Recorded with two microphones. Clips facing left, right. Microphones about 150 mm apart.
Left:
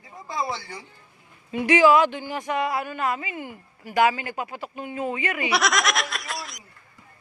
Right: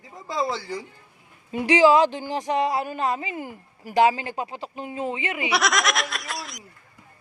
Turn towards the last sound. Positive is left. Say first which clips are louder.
# even
turn(degrees=0)  # may be behind; listen again after turning